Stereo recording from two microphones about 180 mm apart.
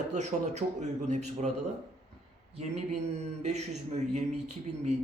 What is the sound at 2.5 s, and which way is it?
A man's voice, 35° right (ahead or behind).